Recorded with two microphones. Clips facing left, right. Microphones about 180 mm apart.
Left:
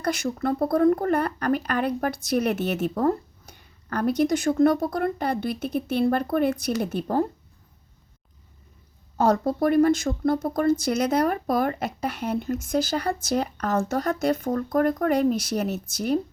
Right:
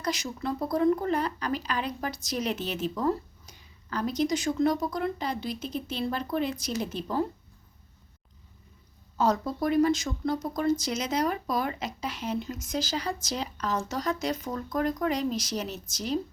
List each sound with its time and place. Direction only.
0.0 s speech: 55° left (ahead or behind)
9.1 s speech: 55° left (ahead or behind)